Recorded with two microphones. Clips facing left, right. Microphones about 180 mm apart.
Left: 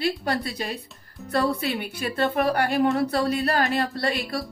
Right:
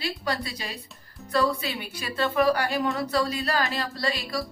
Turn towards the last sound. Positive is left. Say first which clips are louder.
# left 3 dB
turn(degrees=60)  # may be behind; listen again after turning